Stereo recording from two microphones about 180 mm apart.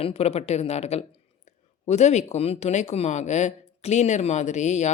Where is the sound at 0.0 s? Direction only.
35° left (ahead or behind).